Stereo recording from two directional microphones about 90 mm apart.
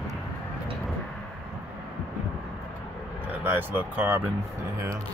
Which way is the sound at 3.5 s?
20° right (ahead or behind).